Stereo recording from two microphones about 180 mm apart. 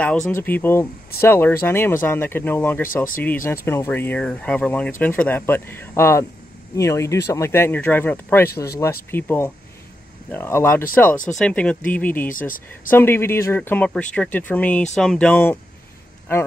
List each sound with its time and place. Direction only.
0.0 s speech: 10° left (ahead or behind)
12.3 s speech: 50° left (ahead or behind)
12.9 s speech: 10° left (ahead or behind)